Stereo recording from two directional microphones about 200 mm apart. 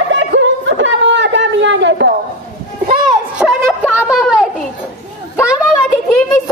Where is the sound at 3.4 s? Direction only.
Centre (ahead or behind).